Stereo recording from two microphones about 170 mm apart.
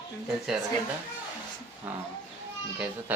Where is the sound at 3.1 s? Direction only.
10° right (ahead or behind).